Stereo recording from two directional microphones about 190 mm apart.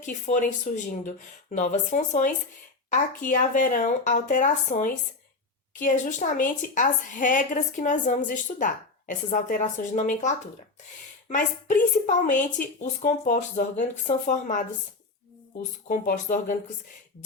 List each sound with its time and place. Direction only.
0.0 s a woman's voice: 40° left (ahead or behind)
15.9 s a woman's voice: 40° left (ahead or behind)